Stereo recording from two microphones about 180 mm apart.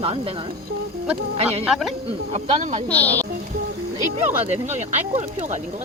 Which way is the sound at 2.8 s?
10° left (ahead or behind).